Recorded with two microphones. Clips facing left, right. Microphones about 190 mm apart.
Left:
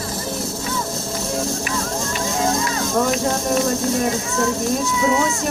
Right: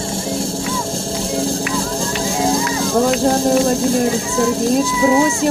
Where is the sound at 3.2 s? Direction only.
30° right (ahead or behind).